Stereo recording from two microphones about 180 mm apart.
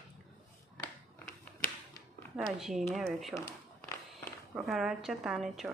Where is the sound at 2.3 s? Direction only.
Centre (ahead or behind).